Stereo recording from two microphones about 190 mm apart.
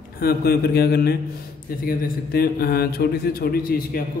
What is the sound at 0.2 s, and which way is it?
A man's voice, 55° left (ahead or behind).